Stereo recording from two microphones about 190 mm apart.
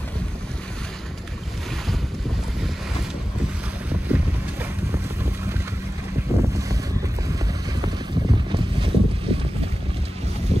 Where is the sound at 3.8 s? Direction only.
10° right (ahead or behind); by 9.4 s 30° right (ahead or behind).